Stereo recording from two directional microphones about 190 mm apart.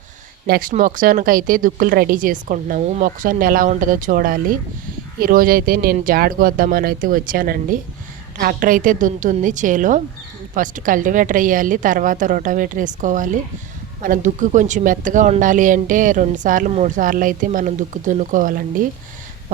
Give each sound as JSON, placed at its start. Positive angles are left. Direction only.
{"t": 0.4, "sound": "speech", "side_deg": -55}
{"t": 0.7, "sound": "speech", "side_deg": -45}